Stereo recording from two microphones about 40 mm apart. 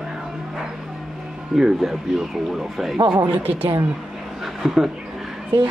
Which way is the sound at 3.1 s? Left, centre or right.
Right.